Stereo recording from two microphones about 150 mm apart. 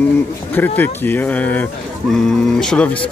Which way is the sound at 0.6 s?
15° left (ahead or behind).